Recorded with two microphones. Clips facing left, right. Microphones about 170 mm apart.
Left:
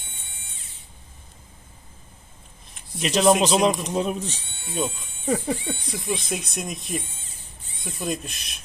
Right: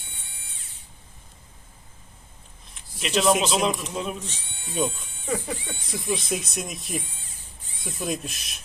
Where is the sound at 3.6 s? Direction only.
40° left (ahead or behind).